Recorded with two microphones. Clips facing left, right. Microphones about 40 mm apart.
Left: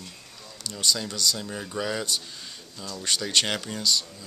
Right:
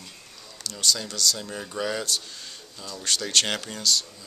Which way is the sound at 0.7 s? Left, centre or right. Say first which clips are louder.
Even; centre.